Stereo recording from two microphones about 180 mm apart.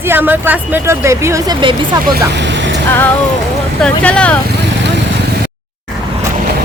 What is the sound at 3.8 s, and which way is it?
Speech, 5° left (ahead or behind).